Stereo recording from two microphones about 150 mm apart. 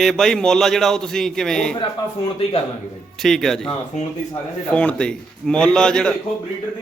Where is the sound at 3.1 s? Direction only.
Centre (ahead or behind).